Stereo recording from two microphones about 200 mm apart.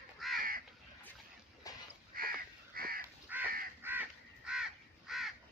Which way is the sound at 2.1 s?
45° right (ahead or behind).